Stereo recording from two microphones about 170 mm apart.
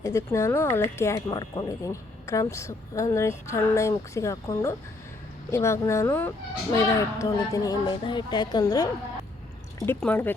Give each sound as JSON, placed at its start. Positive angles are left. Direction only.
{"t": 0.0, "sound": "speech", "side_deg": 15}
{"t": 9.8, "sound": "speech", "side_deg": 10}